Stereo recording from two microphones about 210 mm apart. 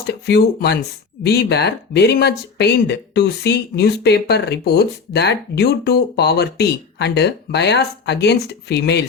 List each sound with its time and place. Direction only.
0.0 s speech: 50° left (ahead or behind)